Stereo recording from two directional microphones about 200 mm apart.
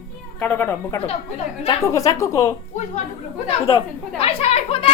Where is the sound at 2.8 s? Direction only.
35° left (ahead or behind).